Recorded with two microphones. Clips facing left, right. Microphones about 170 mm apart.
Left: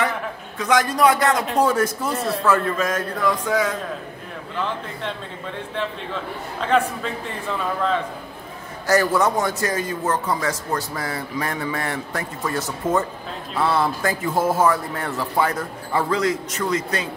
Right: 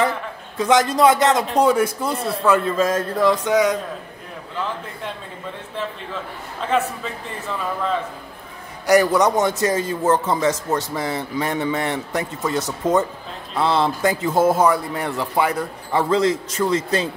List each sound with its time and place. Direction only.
0.6 s a man's voice: 25° right (ahead or behind)
2.8 s a man's voice: 30° right (ahead or behind)
8.8 s a man's voice: 15° right (ahead or behind)
16.1 s a man's voice: 25° right (ahead or behind)